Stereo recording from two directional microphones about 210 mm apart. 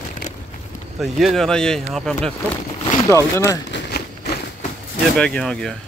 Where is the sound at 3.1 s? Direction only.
15° left (ahead or behind).